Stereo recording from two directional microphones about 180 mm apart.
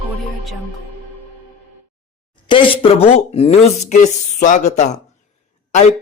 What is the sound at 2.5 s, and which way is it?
Speech, 30° left (ahead or behind).